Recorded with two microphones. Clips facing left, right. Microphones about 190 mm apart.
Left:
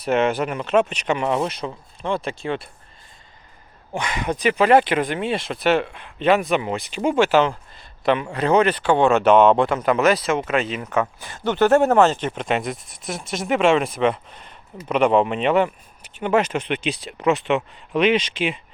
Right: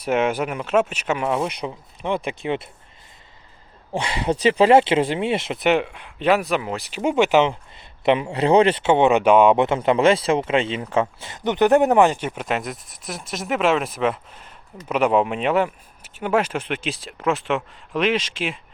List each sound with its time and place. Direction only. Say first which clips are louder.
0.0 s speech: left 1 dB; 10° right (ahead or behind)
1.5 s speech: even; 15° right (ahead or behind)
3.9 s speech: right 2 dB; 30° right (ahead or behind); by 7.2 s 5° right (ahead or behind)
7.2 s speech: right 1 dB; 15° right (ahead or behind)
9.6 s speech: right 1 dB; 25° right (ahead or behind); by 18.6 s centre (ahead or behind)